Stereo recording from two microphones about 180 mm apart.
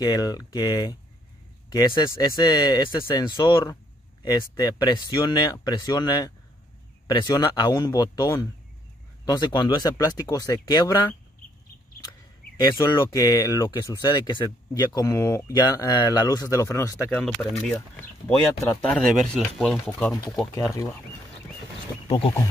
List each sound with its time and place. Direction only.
0.0 s speech: 20° left (ahead or behind)
12.5 s speech: 25° left (ahead or behind)
17.2 s speech: centre (ahead or behind)
20.5 s speech: 15° left (ahead or behind)
22.0 s a sound: 30° left (ahead or behind)